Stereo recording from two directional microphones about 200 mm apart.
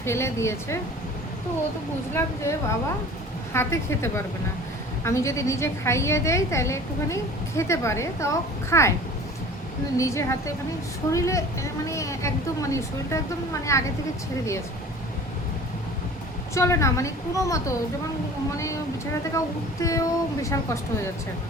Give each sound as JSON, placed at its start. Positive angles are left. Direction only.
{"t": 0.0, "sound": "a woman's voice", "side_deg": 15}
{"t": 2.1, "sound": "a woman's voice", "side_deg": 15}
{"t": 10.0, "sound": "a woman's voice", "side_deg": 15}
{"t": 16.6, "sound": "a woman's voice", "side_deg": 15}